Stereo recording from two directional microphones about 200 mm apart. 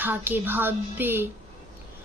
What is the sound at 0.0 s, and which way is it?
A woman's voice, 10° right (ahead or behind).